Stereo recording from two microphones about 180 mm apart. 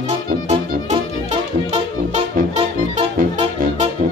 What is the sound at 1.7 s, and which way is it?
Music, 40° right (ahead or behind).